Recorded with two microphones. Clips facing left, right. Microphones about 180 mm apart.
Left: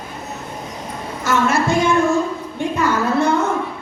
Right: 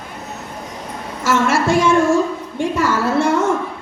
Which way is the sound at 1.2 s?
90° right.